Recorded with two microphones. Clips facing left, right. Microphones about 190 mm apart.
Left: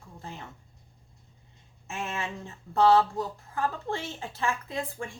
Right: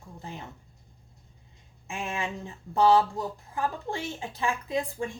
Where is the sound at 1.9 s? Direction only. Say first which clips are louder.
Right 1 dB; 15° right (ahead or behind).